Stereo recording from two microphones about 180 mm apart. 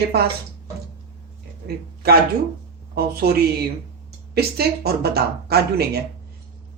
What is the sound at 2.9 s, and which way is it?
Speech, 60° right (ahead or behind).